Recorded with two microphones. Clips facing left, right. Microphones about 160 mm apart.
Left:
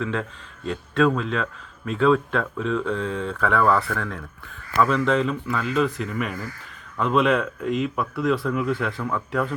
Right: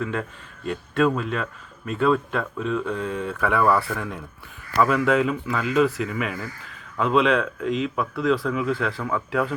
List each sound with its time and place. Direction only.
1.0 s speech: 5° right (ahead or behind)